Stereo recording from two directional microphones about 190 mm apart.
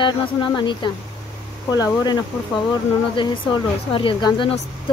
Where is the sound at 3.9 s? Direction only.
25° left (ahead or behind).